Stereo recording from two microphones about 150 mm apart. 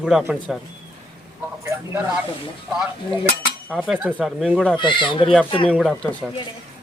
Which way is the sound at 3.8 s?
5° right (ahead or behind).